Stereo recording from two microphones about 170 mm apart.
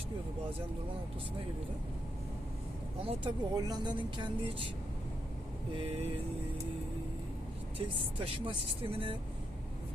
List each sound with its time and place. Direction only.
3.0 s speech: 30° right (ahead or behind)
5.7 s speech: 35° right (ahead or behind)
7.8 s speech: 35° right (ahead or behind)